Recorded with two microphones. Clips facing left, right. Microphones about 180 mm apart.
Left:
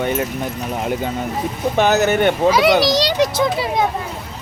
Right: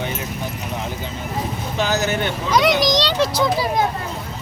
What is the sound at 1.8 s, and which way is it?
Speech, 60° left (ahead or behind).